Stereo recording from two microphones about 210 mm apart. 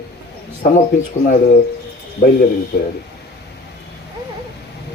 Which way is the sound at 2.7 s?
50° left (ahead or behind).